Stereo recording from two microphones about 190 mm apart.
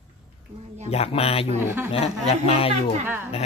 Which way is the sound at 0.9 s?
30° left (ahead or behind).